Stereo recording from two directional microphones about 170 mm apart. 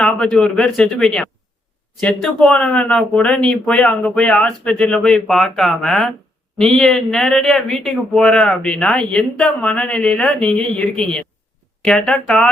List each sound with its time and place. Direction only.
0.0 s speech: 5° left (ahead or behind)